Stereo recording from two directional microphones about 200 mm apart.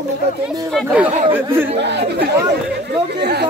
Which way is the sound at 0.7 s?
5° right (ahead or behind).